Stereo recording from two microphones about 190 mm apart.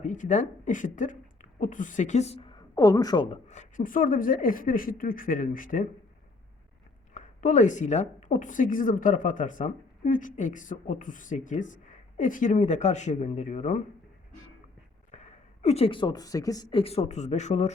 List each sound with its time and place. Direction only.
0.0 s speech: 40° left (ahead or behind); by 3.3 s 20° left (ahead or behind)
3.5 s speech: 40° left (ahead or behind)
7.1 s a woman's voice: 40° left (ahead or behind)
15.1 s speech: 35° left (ahead or behind); by 16.8 s 20° left (ahead or behind)
16.8 s a woman's voice: 35° left (ahead or behind)